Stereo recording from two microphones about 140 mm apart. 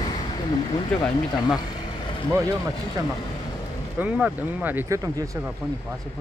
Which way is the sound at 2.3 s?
25° right (ahead or behind).